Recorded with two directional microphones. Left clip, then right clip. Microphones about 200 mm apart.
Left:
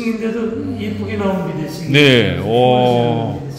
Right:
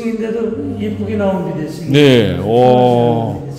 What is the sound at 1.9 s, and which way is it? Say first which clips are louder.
A man's voice: right 1 dB; 20° right (ahead or behind).